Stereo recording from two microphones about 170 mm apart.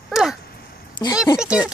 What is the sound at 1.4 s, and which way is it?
Speech, 5° right (ahead or behind).